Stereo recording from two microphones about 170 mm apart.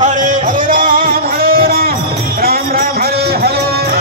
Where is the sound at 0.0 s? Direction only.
45° right (ahead or behind).